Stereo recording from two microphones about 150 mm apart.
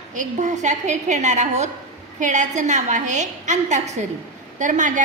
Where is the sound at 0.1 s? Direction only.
55° right (ahead or behind).